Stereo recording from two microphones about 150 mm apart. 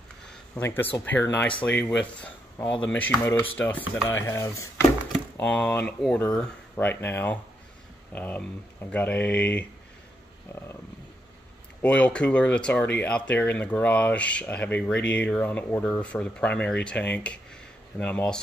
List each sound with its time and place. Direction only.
0.6 s speech: 15° left (ahead or behind)
5.4 s speech: 10° left (ahead or behind)
11.8 s speech: 10° left (ahead or behind)